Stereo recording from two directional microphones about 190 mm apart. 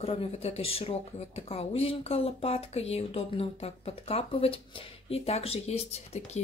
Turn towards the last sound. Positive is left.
turn(degrees=35)  # may be behind; listen again after turning